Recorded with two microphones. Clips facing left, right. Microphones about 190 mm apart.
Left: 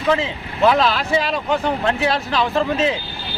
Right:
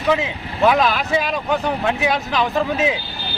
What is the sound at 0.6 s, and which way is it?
Speech, 10° right (ahead or behind).